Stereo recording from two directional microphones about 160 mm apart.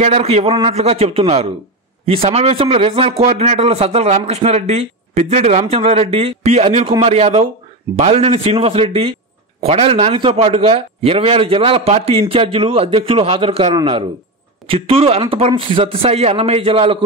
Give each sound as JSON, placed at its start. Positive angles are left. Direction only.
{"t": 0.0, "sound": "a man's voice", "side_deg": -40}